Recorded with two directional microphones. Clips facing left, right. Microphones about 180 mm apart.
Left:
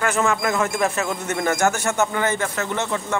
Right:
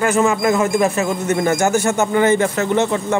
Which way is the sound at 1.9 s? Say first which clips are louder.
Right 6 dB; 15° right (ahead or behind).